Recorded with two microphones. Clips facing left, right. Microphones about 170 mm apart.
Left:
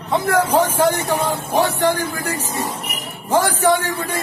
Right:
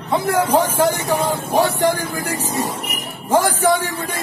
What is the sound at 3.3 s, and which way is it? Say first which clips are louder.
Speech: even; 10° right (ahead or behind).